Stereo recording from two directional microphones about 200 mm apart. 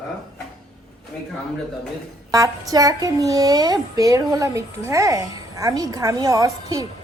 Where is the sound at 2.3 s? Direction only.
15° right (ahead or behind).